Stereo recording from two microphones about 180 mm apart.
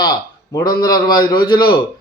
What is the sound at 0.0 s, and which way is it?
A man's voice, 20° left (ahead or behind).